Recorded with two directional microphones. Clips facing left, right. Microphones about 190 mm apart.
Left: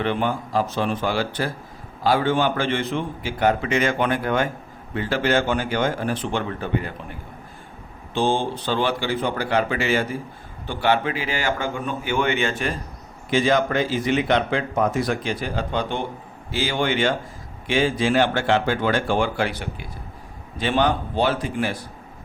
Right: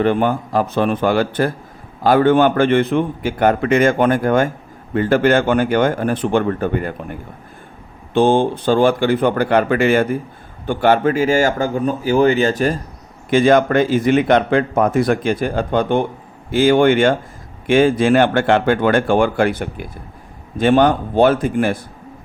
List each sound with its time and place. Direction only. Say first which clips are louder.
0.0 s a man's voice: right 7 dB; 50° right (ahead or behind)
13.3 s a man's voice: right 7 dB; 55° right (ahead or behind)